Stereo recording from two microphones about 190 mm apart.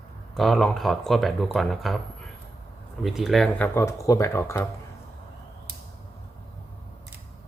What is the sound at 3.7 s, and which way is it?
Speech, 15° left (ahead or behind).